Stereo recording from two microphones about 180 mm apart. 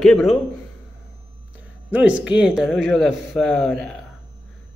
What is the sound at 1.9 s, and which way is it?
Speech, 5° right (ahead or behind).